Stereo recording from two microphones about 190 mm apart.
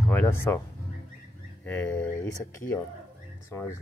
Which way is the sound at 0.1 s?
10° left (ahead or behind).